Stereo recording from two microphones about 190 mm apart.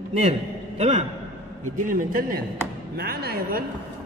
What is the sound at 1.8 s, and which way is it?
A man's voice, 45° right (ahead or behind).